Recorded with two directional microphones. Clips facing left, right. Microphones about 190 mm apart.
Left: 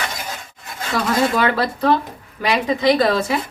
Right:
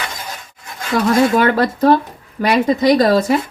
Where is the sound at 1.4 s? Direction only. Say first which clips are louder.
Right 5 dB; 50° right (ahead or behind).